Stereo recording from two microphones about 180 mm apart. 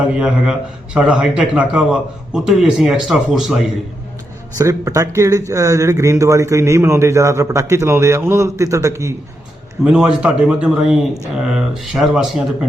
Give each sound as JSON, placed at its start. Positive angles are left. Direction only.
{"t": 0.2, "sound": "a man's voice", "side_deg": -5}
{"t": 4.5, "sound": "a man's voice", "side_deg": -15}
{"t": 9.8, "sound": "a man's voice", "side_deg": -5}